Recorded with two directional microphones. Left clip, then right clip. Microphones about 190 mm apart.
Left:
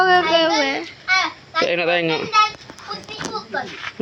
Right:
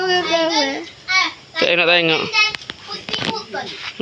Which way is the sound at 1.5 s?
5° right (ahead or behind).